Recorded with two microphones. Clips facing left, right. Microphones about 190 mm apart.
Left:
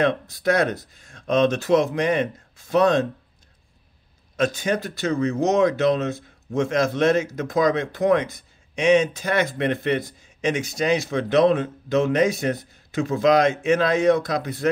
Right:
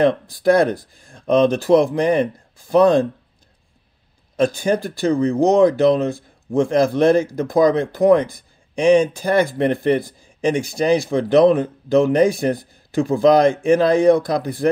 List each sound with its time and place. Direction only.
0.0 s speech: 30° right (ahead or behind)
4.4 s speech: 30° right (ahead or behind)